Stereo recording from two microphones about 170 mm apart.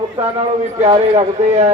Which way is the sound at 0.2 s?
35° right (ahead or behind).